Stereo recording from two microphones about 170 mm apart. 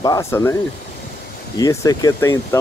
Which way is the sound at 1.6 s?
20° left (ahead or behind).